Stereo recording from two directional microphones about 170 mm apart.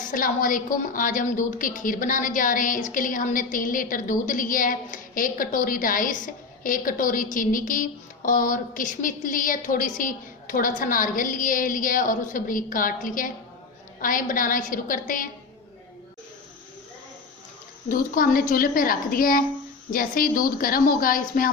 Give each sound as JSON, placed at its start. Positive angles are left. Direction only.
{"t": 0.0, "sound": "a woman's voice", "side_deg": 55}
{"t": 17.8, "sound": "a woman's voice", "side_deg": 55}